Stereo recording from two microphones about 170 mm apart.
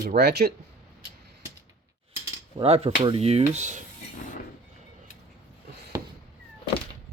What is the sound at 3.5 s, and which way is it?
Cutlery, 45° right (ahead or behind).